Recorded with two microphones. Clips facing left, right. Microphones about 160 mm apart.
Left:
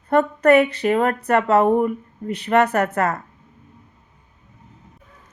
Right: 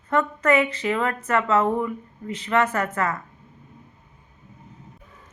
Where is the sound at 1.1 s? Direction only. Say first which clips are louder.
Left 4 dB; 65° left (ahead or behind).